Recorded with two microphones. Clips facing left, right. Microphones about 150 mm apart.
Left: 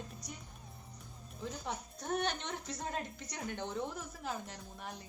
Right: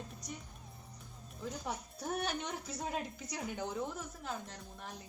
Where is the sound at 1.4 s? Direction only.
5° right (ahead or behind).